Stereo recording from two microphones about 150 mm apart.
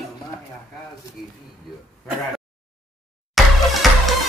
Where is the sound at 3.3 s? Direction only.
Centre (ahead or behind).